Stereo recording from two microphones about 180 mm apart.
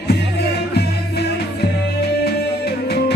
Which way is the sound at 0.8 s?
65° left (ahead or behind).